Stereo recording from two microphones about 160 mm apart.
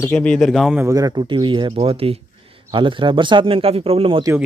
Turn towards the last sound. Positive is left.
turn(degrees=-35)  # may be behind; listen again after turning